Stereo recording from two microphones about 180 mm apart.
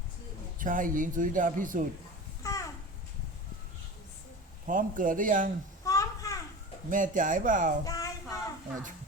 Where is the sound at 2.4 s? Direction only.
15° left (ahead or behind).